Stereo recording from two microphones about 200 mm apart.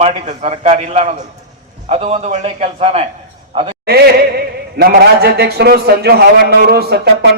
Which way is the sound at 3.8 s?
55° right (ahead or behind).